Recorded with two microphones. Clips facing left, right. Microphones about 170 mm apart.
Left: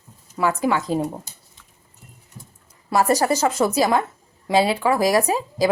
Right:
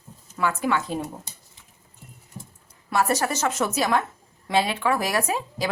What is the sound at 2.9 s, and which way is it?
Speech, 35° left (ahead or behind).